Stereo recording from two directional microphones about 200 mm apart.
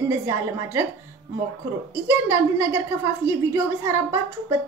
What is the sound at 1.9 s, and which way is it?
A woman's voice, 10° right (ahead or behind).